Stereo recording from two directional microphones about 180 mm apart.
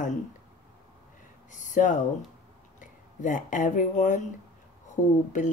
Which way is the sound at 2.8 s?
45° left (ahead or behind).